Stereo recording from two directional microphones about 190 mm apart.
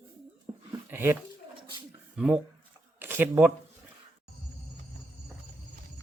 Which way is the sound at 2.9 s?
10° right (ahead or behind).